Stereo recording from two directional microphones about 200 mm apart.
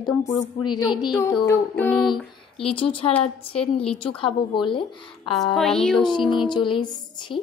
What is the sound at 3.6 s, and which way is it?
Speech, 5° left (ahead or behind).